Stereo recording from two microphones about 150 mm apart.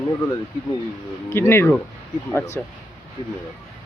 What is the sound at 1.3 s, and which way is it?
Speech, 15° left (ahead or behind).